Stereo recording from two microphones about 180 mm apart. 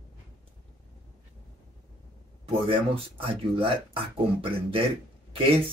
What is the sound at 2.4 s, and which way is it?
Speech, 30° right (ahead or behind).